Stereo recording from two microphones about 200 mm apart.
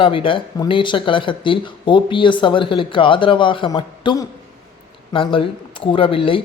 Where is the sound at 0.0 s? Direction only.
25° left (ahead or behind).